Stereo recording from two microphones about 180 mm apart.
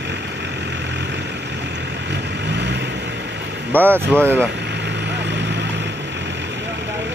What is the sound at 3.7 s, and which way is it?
Speech, 10° right (ahead or behind).